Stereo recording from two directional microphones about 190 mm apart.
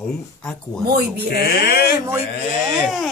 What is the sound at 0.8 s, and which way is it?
Speech, 55° right (ahead or behind).